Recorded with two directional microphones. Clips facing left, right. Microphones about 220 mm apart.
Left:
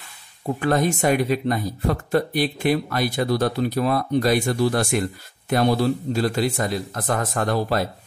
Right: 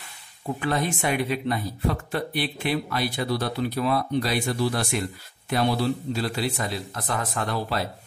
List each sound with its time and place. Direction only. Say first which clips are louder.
0.6 s speech: left 6 dB; 45° left (ahead or behind)